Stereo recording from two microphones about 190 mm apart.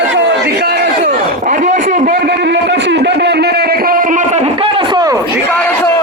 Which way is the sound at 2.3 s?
65° right (ahead or behind).